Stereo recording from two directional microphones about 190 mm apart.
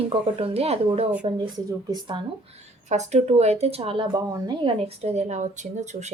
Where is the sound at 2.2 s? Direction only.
30° right (ahead or behind).